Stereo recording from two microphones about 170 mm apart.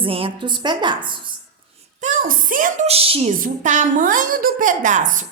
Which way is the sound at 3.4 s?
50° right (ahead or behind).